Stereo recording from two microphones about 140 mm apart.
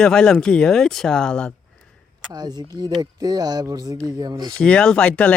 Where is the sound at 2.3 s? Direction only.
30° right (ahead or behind).